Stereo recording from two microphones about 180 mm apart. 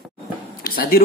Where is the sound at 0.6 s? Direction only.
55° left (ahead or behind).